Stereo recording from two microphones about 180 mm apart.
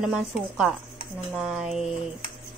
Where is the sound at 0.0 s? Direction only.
5° right (ahead or behind).